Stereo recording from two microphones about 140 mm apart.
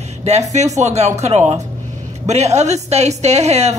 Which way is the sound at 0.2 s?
50° right (ahead or behind).